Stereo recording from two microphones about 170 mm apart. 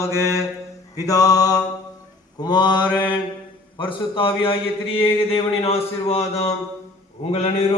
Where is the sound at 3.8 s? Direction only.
30° left (ahead or behind).